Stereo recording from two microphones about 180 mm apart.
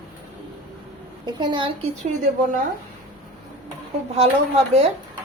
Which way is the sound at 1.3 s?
25° right (ahead or behind).